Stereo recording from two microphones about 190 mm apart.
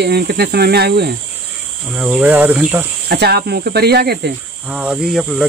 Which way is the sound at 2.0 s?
5° right (ahead or behind).